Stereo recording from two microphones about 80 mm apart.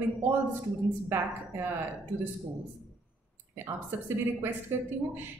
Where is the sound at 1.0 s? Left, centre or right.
Right.